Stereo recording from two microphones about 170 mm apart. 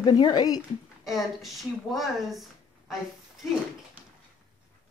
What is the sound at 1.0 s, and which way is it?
Speech, centre (ahead or behind).